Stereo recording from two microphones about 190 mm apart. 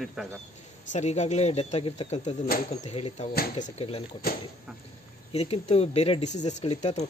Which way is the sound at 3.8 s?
30° left (ahead or behind).